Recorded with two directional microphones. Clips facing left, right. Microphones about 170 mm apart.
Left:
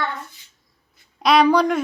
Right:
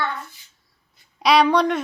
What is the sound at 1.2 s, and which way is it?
Speech, centre (ahead or behind).